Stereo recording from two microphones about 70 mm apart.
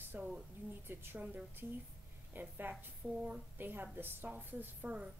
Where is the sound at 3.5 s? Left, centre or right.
Right.